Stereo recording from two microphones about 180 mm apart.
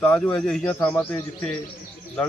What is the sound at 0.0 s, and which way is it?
Speech, 5° left (ahead or behind).